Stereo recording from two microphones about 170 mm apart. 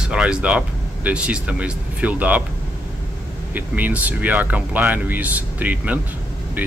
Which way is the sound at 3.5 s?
10° right (ahead or behind).